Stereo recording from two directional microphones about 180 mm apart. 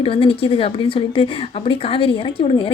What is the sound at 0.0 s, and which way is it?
A woman's voice, 30° left (ahead or behind).